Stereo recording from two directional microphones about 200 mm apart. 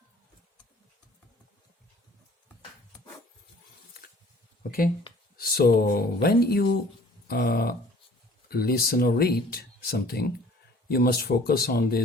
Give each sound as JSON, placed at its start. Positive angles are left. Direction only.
{"t": 5.4, "sound": "speech", "side_deg": 50}